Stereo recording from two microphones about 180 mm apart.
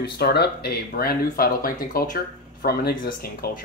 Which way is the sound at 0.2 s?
65° left (ahead or behind).